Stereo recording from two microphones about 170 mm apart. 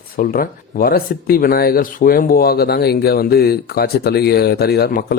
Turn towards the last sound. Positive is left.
turn(degrees=65)  # may be behind; listen again after turning